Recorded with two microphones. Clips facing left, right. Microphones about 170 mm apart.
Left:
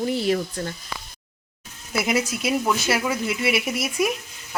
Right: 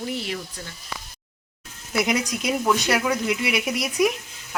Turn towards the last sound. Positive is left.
turn(degrees=0)  # may be behind; listen again after turning